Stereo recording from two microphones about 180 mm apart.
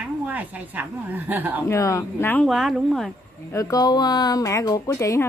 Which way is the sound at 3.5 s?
20° left (ahead or behind).